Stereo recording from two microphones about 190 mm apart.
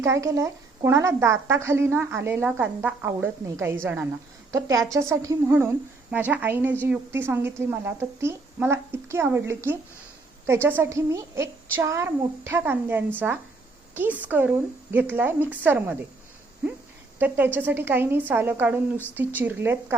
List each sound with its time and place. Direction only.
0.0 s a woman's voice: 15° right (ahead or behind)